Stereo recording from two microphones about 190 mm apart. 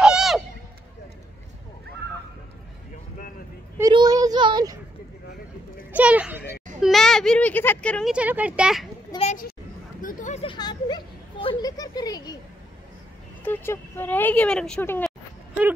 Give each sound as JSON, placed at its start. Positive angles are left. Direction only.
{"t": 0.0, "sound": "a sound", "side_deg": -5}
{"t": 3.9, "sound": "child singing", "side_deg": -20}
{"t": 5.9, "sound": "children playing", "side_deg": -5}
{"t": 6.8, "sound": "a child's voice", "side_deg": 0}
{"t": 8.1, "sound": "speech", "side_deg": -5}
{"t": 9.2, "sound": "a sound", "side_deg": 40}
{"t": 10.4, "sound": "speech", "side_deg": 25}
{"t": 13.4, "sound": "speech", "side_deg": 10}